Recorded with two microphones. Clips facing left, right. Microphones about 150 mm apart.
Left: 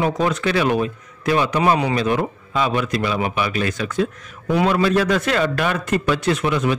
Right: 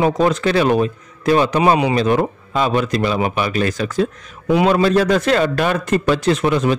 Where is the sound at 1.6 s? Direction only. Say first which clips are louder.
Right 3 dB; 20° right (ahead or behind).